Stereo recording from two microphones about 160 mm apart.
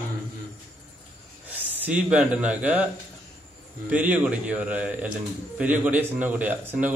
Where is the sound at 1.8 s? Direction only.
5° right (ahead or behind).